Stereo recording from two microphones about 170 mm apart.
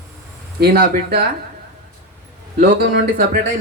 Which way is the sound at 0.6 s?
65° right (ahead or behind).